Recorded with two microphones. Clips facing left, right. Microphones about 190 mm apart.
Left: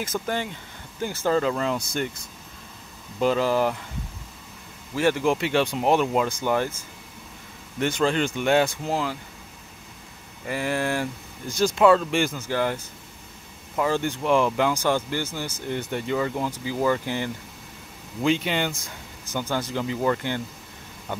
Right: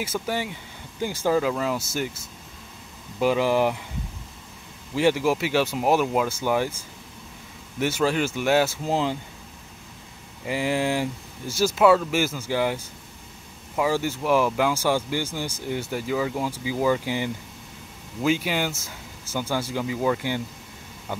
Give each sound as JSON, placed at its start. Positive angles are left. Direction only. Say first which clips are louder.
{"t": 0.0, "sound": "speech", "louder": "even", "side_deg": -10}
{"t": 4.9, "sound": "speech", "louder": "right 1 dB", "side_deg": -10}
{"t": 7.8, "sound": "speech", "louder": "even", "side_deg": -5}
{"t": 8.8, "sound": "speech", "louder": "right 2 dB", "side_deg": -20}
{"t": 10.4, "sound": "speech", "louder": "right 2 dB", "side_deg": -15}